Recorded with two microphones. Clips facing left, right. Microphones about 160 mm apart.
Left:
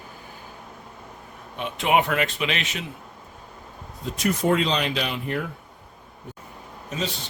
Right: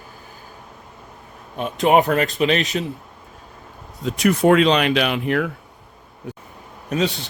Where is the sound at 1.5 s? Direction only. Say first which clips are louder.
Right 6 dB; 40° right (ahead or behind).